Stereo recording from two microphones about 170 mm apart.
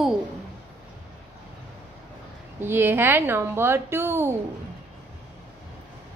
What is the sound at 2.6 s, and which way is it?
A woman's voice, 15° right (ahead or behind).